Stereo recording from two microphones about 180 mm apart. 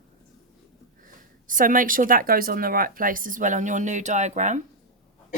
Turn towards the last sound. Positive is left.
turn(degrees=-40)  # may be behind; listen again after turning